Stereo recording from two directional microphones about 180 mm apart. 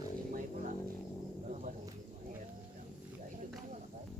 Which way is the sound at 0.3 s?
45° right (ahead or behind).